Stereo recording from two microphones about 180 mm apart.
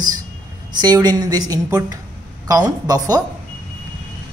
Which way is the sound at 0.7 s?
20° right (ahead or behind).